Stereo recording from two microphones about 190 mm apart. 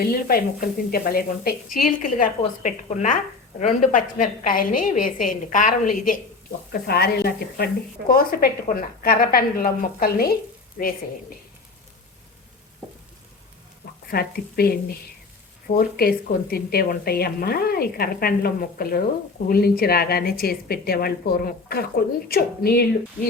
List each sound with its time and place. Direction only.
0.0 s a woman's voice: 50° left (ahead or behind)
6.7 s a woman's voice: 55° left (ahead or behind)
14.1 s a woman's voice: 55° left (ahead or behind)